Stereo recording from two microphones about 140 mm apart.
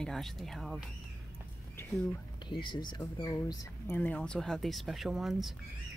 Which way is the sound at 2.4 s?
35° left (ahead or behind).